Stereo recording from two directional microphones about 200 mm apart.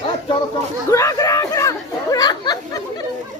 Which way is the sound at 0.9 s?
15° left (ahead or behind).